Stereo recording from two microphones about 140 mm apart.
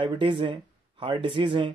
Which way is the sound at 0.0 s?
35° right (ahead or behind).